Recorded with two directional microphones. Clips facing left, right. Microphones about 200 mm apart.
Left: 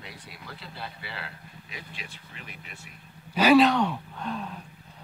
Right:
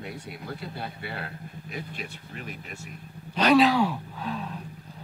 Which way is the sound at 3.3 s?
5° left (ahead or behind).